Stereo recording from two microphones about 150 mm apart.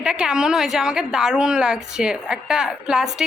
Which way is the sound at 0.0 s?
5° right (ahead or behind).